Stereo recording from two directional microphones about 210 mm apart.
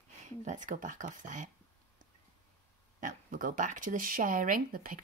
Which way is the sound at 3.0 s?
40° right (ahead or behind).